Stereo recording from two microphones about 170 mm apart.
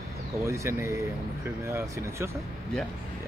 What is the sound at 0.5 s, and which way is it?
Speech, 15° right (ahead or behind).